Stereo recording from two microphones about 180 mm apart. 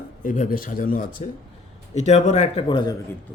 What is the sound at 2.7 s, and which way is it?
Speech, 25° left (ahead or behind).